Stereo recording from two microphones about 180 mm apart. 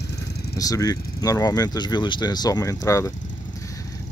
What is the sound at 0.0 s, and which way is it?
Vehicle, 65° left (ahead or behind).